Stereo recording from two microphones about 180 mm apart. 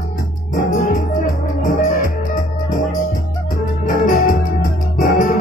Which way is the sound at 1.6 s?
45° left (ahead or behind).